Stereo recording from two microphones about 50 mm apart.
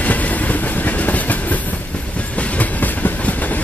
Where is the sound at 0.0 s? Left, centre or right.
Left.